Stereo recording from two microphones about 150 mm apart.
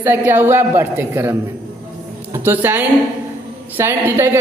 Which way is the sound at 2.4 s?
15° right (ahead or behind).